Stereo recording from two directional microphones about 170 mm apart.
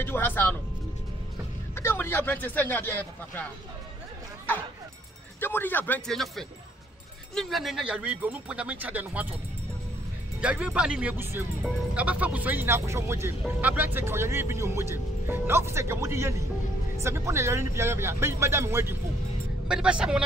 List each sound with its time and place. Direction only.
0.0 s speech: 10° left (ahead or behind)
1.8 s speech: 15° left (ahead or behind)
5.4 s speech: 10° left (ahead or behind); by 9.3 s 10° right (ahead or behind)
10.4 s speech: 5° right (ahead or behind)